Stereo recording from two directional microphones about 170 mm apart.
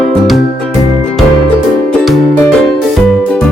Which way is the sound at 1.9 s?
5° left (ahead or behind).